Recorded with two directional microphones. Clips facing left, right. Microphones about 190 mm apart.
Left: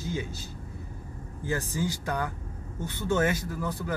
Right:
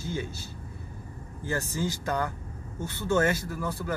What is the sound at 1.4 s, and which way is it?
Speech, 15° left (ahead or behind).